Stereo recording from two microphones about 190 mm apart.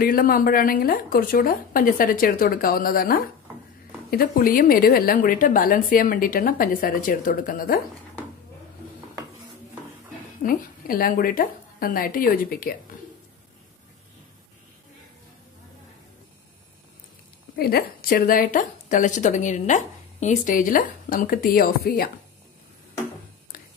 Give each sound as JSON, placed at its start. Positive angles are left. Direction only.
{"t": 0.0, "sound": "a woman's voice", "side_deg": 50}
{"t": 10.4, "sound": "a woman's voice", "side_deg": 50}
{"t": 17.6, "sound": "a woman's voice", "side_deg": 55}